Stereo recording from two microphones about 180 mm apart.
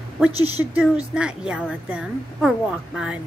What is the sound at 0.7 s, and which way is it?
A woman's voice, 5° right (ahead or behind).